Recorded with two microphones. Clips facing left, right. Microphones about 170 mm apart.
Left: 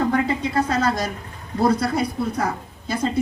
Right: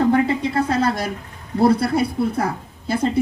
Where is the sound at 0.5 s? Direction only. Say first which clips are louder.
Left 1 dB; 30° right (ahead or behind).